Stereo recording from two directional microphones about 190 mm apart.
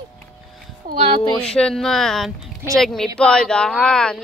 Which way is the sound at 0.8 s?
50° right (ahead or behind).